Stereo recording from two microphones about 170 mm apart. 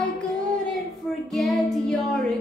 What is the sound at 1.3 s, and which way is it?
Child singing, centre (ahead or behind).